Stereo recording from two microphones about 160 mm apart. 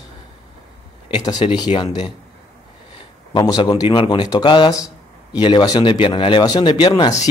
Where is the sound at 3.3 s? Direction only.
25° left (ahead or behind).